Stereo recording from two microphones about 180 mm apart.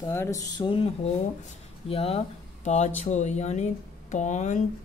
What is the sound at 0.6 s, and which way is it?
Speech, 30° left (ahead or behind).